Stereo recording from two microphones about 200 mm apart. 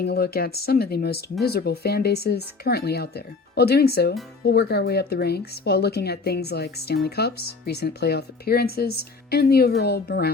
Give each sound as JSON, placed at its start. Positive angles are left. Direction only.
{"t": 0.0, "sound": "speech", "side_deg": 50}